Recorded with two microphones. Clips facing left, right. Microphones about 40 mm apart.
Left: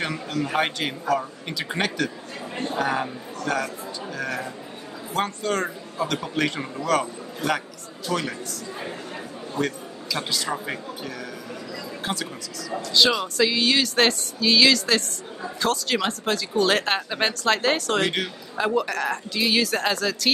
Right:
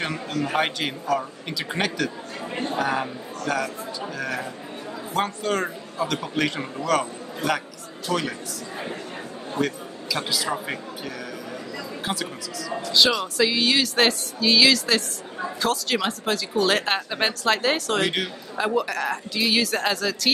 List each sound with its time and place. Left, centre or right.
0.1 s a man's voice: right
0.5 s a man's voice: centre
9.6 s a man's voice: centre
12.0 s speech: centre